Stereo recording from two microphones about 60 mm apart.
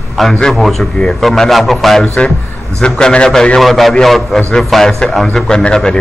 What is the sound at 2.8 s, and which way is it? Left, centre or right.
A man's voice, centre.